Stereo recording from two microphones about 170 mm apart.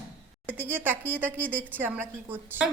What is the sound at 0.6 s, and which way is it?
A woman's voice, 10° right (ahead or behind).